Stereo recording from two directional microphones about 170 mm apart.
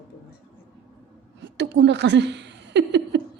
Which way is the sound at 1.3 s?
90° right.